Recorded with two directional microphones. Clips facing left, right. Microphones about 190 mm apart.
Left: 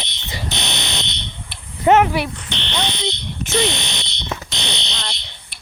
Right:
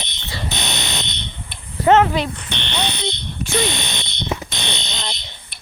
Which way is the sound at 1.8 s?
15° left (ahead or behind).